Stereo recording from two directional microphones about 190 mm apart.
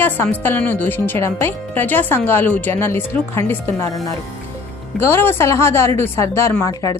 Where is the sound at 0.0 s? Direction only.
10° left (ahead or behind).